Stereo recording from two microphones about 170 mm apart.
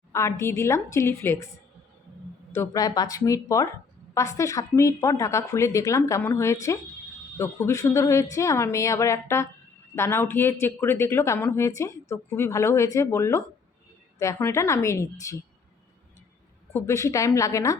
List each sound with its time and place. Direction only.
0.1 s a woman's voice: 15° left (ahead or behind)
2.5 s a woman's voice: 20° left (ahead or behind)
16.7 s a woman's voice: 15° left (ahead or behind)